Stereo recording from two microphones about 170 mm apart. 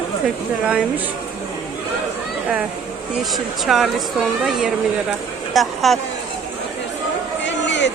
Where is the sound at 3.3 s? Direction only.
Centre (ahead or behind).